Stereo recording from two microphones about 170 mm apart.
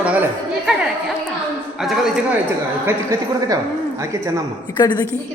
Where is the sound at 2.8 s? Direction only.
15° right (ahead or behind).